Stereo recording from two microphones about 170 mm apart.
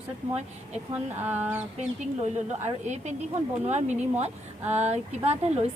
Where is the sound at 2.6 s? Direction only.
45° right (ahead or behind).